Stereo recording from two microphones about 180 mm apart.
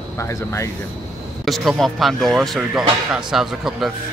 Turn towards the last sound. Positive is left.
turn(degrees=0)  # may be behind; listen again after turning